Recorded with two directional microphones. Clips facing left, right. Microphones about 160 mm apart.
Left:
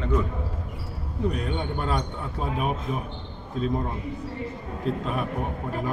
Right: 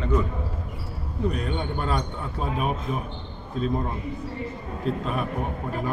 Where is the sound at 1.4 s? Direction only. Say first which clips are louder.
Even; 15° left (ahead or behind).